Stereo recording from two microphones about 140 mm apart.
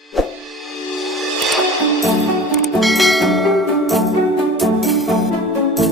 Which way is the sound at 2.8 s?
Centre (ahead or behind).